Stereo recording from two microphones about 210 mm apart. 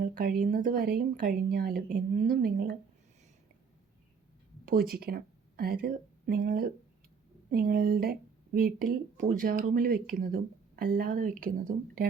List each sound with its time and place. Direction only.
0.0 s speech: 45° right (ahead or behind)
4.6 s speech: 45° right (ahead or behind)